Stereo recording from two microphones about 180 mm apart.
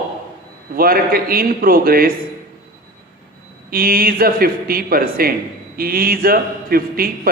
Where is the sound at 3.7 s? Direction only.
55° right (ahead or behind).